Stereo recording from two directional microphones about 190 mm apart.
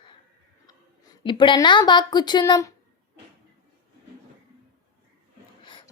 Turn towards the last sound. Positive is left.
turn(degrees=25)  # may be behind; listen again after turning